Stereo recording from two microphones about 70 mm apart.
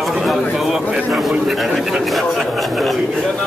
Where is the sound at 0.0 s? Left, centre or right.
Centre.